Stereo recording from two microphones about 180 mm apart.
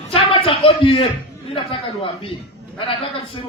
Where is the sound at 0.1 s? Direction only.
30° left (ahead or behind).